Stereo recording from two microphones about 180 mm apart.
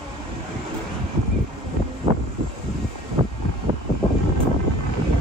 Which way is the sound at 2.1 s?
40° right (ahead or behind).